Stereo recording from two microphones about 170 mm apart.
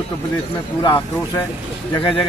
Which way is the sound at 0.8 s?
25° left (ahead or behind).